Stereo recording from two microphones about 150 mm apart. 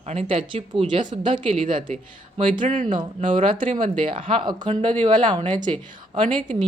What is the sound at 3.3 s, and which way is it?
Speech, 35° right (ahead or behind).